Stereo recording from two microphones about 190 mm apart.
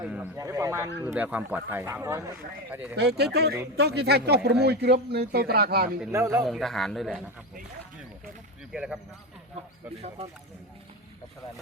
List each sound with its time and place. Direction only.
0.1 s speech: 15° right (ahead or behind)
2.9 s speech: 60° right (ahead or behind)
6.1 s speech: 15° right (ahead or behind)
6.4 s speech: centre (ahead or behind)
8.7 s speech: 5° right (ahead or behind)